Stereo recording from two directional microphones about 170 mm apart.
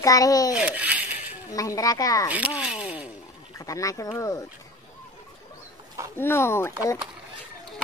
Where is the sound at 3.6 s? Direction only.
20° left (ahead or behind).